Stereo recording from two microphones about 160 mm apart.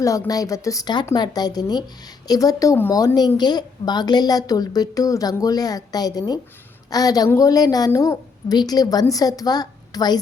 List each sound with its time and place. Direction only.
0.0 s a woman's voice: 20° left (ahead or behind)